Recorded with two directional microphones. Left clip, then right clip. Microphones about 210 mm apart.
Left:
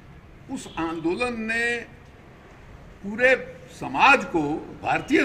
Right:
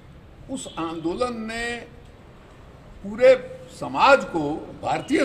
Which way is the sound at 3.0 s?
10° left (ahead or behind).